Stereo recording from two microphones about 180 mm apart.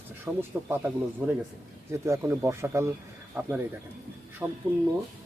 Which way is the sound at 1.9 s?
15° right (ahead or behind).